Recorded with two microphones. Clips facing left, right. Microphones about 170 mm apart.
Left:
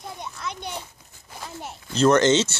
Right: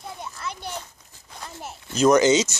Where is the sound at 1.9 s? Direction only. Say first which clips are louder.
Right 1 dB; 10° right (ahead or behind).